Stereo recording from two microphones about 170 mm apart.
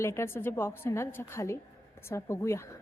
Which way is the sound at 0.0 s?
15° left (ahead or behind).